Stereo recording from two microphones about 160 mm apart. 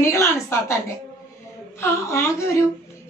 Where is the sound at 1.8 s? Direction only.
15° left (ahead or behind).